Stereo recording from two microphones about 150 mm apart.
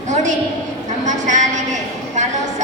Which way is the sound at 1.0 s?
55° right (ahead or behind).